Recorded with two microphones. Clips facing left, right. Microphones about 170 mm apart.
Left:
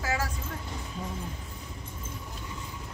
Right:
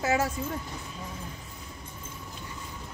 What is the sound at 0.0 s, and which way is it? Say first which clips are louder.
Vehicle: right 5 dB; 25° right (ahead or behind).